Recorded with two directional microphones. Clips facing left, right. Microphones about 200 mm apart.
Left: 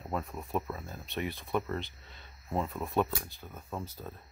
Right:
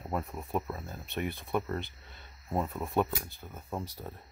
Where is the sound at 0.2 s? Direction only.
20° right (ahead or behind).